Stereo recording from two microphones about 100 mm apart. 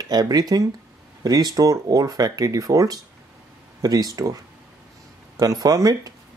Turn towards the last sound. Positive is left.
turn(degrees=-35)  # may be behind; listen again after turning